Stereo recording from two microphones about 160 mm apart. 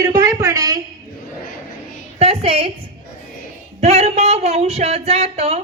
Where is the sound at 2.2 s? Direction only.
35° right (ahead or behind).